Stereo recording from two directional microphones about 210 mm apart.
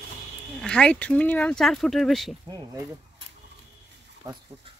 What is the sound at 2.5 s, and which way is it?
Speech, 15° right (ahead or behind).